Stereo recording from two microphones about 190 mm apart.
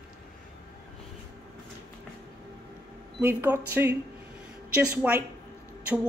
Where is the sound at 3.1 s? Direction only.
10° right (ahead or behind).